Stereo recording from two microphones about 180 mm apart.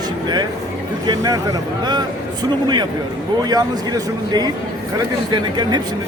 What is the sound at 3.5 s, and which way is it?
Speech, 20° right (ahead or behind).